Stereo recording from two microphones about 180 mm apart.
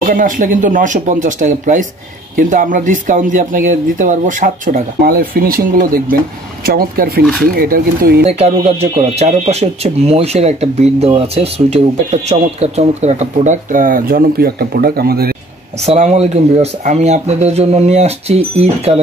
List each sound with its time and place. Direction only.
0.0 s speech: 50° right (ahead or behind)
5.0 s speech: 55° right (ahead or behind)
8.3 s speech: 35° right (ahead or behind); by 15.3 s 60° right (ahead or behind)
15.8 s speech: 35° right (ahead or behind)